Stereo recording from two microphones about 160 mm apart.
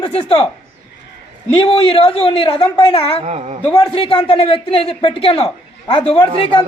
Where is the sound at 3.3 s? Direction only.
45° right (ahead or behind).